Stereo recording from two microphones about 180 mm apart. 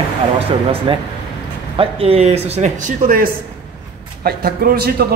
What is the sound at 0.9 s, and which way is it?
A man's voice, 30° right (ahead or behind).